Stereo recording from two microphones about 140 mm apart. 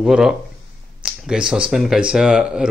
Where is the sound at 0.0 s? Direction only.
5° right (ahead or behind).